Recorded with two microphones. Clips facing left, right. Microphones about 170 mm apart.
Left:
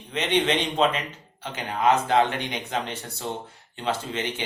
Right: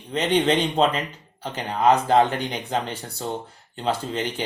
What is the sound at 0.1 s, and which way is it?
A man's voice, 35° right (ahead or behind).